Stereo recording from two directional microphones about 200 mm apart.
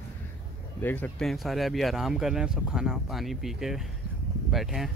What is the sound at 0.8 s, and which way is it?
Speech, 10° left (ahead or behind).